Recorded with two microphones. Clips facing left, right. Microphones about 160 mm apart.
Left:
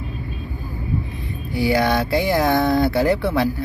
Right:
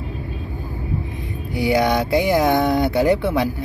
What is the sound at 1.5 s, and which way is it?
Speech, 20° right (ahead or behind).